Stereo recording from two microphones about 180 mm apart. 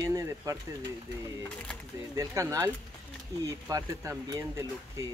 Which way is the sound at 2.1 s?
15° right (ahead or behind).